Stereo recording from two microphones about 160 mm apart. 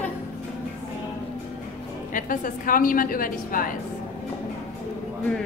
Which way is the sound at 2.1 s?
55° left (ahead or behind).